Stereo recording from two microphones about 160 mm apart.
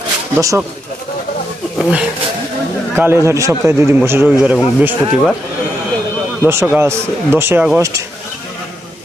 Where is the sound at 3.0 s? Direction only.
15° right (ahead or behind).